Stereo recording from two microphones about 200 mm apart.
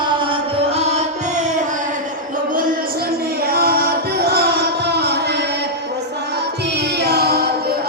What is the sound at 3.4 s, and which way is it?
Music, 50° right (ahead or behind).